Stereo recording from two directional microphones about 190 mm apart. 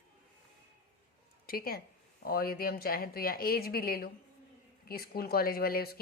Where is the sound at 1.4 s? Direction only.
50° left (ahead or behind).